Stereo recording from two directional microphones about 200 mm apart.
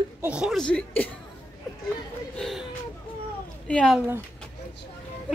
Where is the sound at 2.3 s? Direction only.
Centre (ahead or behind).